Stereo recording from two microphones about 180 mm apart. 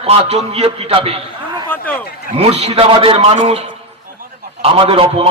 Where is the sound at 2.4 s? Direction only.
35° right (ahead or behind).